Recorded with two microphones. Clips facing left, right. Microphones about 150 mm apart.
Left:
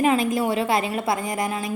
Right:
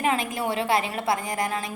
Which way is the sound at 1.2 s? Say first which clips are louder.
Left 2 dB; 20° left (ahead or behind).